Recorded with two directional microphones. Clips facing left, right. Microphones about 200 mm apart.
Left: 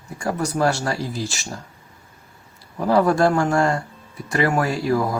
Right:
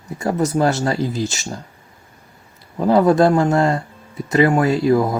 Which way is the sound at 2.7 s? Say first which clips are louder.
Right 4 dB; 20° right (ahead or behind).